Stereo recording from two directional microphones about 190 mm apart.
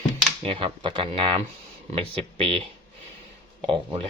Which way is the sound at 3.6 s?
25° right (ahead or behind).